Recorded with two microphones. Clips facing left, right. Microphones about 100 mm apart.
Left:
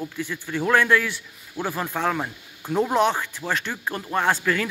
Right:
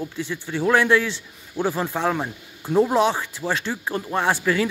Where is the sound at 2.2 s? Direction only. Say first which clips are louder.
Right 2 dB; 10° right (ahead or behind).